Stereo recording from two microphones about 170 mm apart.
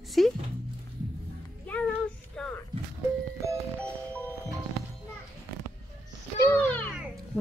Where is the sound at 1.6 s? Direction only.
10° left (ahead or behind).